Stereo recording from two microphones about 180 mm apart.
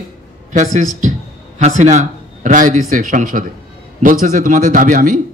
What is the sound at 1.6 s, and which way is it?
A man's voice, 40° right (ahead or behind).